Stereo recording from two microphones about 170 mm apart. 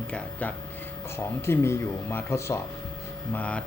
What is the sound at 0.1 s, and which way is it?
Speech, 10° left (ahead or behind).